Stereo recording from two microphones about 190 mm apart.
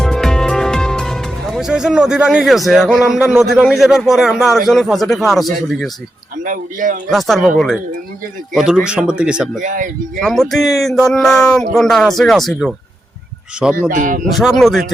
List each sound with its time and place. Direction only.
0.0 s speech: 5° left (ahead or behind)
6.4 s speech: 45° right (ahead or behind)
7.1 s speech: centre (ahead or behind)
9.6 s speech: 45° right (ahead or behind)
10.2 s speech: centre (ahead or behind)
13.9 s speech: 45° right (ahead or behind)
14.3 s speech: centre (ahead or behind)